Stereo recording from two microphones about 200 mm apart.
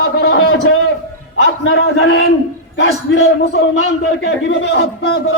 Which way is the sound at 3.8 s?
65° left (ahead or behind).